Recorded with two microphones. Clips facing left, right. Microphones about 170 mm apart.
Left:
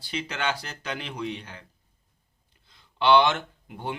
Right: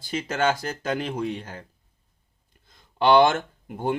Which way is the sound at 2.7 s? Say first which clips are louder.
Right 2 dB; 45° right (ahead or behind).